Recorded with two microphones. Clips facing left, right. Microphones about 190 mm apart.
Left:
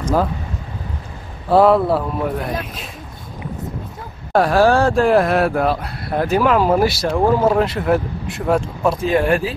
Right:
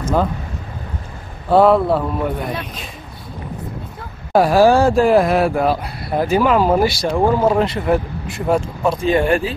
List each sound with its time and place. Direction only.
1.5 s speech: centre (ahead or behind)
4.3 s speech: 5° right (ahead or behind)